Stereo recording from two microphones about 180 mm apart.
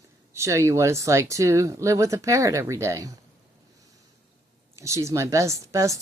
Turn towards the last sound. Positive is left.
turn(degrees=-15)  # may be behind; listen again after turning